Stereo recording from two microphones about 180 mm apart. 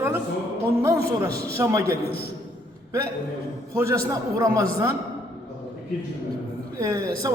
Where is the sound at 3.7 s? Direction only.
15° right (ahead or behind).